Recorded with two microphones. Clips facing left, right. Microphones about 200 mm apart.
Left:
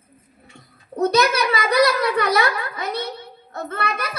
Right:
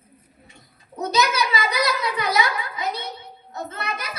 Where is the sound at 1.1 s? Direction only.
60° left (ahead or behind).